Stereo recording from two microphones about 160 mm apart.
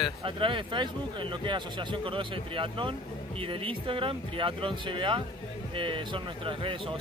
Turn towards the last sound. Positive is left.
turn(degrees=-30)  # may be behind; listen again after turning